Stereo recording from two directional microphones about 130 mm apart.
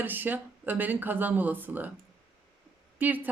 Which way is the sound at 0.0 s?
15° right (ahead or behind).